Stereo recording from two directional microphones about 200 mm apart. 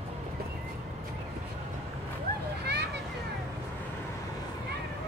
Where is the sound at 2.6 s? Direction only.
55° right (ahead or behind).